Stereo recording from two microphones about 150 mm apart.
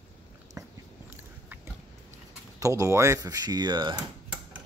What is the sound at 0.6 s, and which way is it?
Biting, 20° right (ahead or behind).